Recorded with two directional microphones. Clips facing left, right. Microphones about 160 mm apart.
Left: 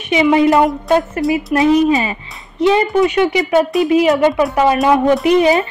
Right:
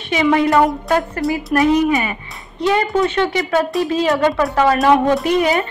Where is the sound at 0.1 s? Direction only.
20° left (ahead or behind).